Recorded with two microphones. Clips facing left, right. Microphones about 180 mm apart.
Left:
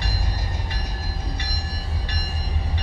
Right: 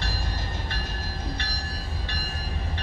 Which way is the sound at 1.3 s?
15° left (ahead or behind).